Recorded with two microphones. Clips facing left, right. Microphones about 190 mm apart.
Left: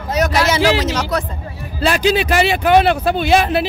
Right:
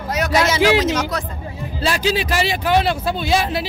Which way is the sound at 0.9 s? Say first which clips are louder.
Left 1 dB; 65° left (ahead or behind).